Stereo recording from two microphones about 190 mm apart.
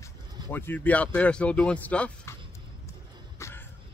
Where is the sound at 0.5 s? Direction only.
10° left (ahead or behind).